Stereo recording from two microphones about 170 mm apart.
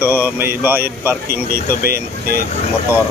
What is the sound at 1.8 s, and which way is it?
Speech, 65° right (ahead or behind).